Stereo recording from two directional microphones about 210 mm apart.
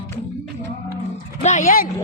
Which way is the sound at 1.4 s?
35° left (ahead or behind).